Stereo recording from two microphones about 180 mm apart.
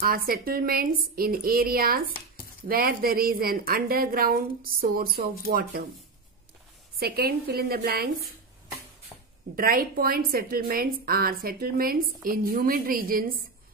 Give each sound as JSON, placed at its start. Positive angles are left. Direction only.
{"t": 0.0, "sound": "a woman's voice", "side_deg": -55}
{"t": 2.0, "sound": "speech", "side_deg": 55}
{"t": 2.7, "sound": "a woman's voice", "side_deg": -55}
{"t": 7.0, "sound": "a woman's voice", "side_deg": -60}
{"t": 9.6, "sound": "a woman's voice", "side_deg": -55}